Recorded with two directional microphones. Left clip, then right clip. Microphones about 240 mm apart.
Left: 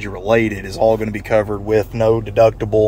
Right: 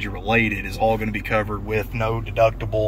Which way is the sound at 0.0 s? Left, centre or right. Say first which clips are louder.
Left 5 dB; centre.